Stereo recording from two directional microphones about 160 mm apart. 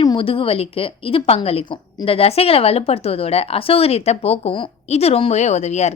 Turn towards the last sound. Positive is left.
turn(degrees=45)  # may be behind; listen again after turning